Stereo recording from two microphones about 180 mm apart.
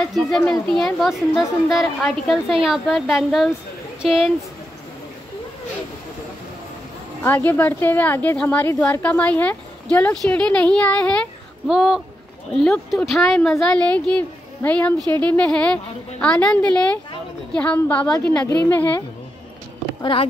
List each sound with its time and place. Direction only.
0.1 s speech: centre (ahead or behind)
7.2 s a woman's voice: 10° left (ahead or behind)
20.0 s speech: 30° left (ahead or behind)